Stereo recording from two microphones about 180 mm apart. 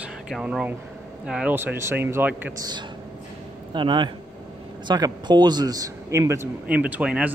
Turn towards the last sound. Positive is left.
turn(degrees=-5)  # may be behind; listen again after turning